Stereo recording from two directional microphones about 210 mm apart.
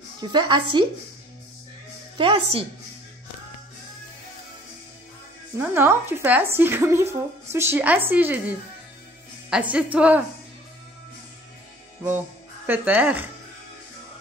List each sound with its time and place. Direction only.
0.2 s a woman's voice: 20° right (ahead or behind)
2.1 s a woman's voice: 25° right (ahead or behind)
5.6 s a woman's voice: 10° right (ahead or behind)
12.6 s speech: 10° right (ahead or behind)